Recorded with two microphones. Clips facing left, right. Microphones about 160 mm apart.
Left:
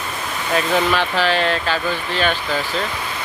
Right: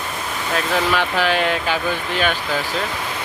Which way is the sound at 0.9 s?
10° right (ahead or behind).